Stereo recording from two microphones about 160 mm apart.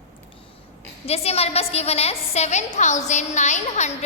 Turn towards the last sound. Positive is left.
turn(degrees=45)  # may be behind; listen again after turning